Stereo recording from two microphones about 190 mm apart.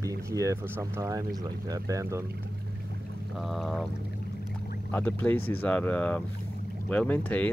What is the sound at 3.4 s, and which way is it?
Speech, centre (ahead or behind).